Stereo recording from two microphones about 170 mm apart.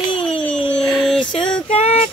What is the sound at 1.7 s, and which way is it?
Speech, 35° left (ahead or behind).